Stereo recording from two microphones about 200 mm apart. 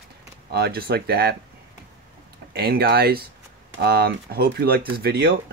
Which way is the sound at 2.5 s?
50° right (ahead or behind).